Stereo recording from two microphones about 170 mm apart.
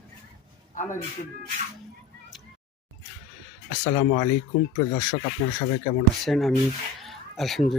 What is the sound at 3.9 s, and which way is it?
Speech, 45° left (ahead or behind).